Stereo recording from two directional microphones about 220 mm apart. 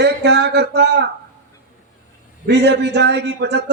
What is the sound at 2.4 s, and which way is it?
A man's voice, 50° right (ahead or behind).